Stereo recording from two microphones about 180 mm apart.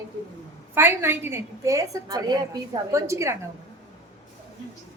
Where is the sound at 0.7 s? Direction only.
10° right (ahead or behind).